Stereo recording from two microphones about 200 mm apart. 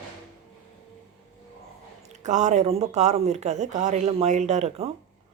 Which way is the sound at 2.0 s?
35° right (ahead or behind).